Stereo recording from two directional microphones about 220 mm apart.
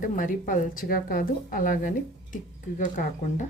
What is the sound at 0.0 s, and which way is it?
A woman's voice, 35° left (ahead or behind).